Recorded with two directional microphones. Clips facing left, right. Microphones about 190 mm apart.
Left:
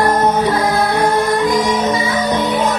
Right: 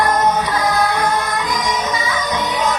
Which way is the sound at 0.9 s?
55° left (ahead or behind).